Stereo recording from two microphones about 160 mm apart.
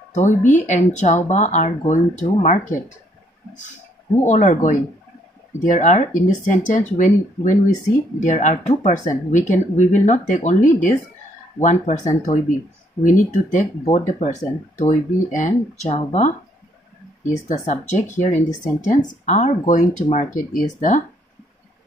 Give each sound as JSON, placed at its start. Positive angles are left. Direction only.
{"t": 0.1, "sound": "speech", "side_deg": 50}
{"t": 4.2, "sound": "speech", "side_deg": 50}
{"t": 13.8, "sound": "speech", "side_deg": 45}